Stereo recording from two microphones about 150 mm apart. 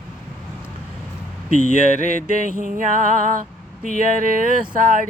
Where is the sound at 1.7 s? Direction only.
60° right (ahead or behind).